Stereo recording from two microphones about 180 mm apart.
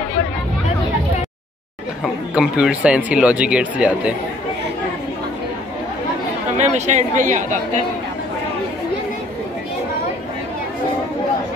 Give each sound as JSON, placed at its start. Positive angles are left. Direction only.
{"t": 2.3, "sound": "speech", "side_deg": -5}
{"t": 6.5, "sound": "speech", "side_deg": -40}